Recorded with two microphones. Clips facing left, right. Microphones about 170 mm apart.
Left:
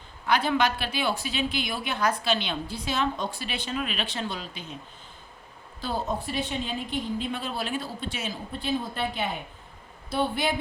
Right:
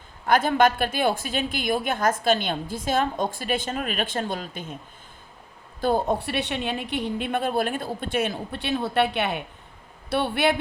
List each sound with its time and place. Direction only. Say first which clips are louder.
0.3 s a woman's voice: right 5 dB; 50° right (ahead or behind)
5.8 s a woman's voice: right 7 dB; 55° right (ahead or behind)